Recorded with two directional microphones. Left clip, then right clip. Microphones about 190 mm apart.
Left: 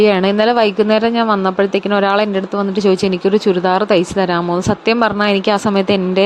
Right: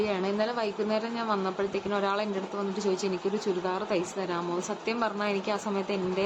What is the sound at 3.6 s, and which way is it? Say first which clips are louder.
Speech: left 17 dB; 50° left (ahead or behind).